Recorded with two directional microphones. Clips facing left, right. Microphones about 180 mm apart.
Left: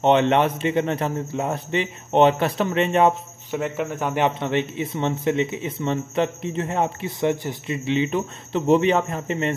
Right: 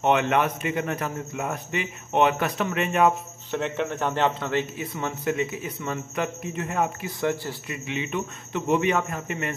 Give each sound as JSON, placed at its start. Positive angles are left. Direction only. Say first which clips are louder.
{"t": 0.0, "sound": "a man's voice", "louder": "left 4 dB", "side_deg": 30}
{"t": 3.5, "sound": "a man's voice", "louder": "left 2 dB", "side_deg": 5}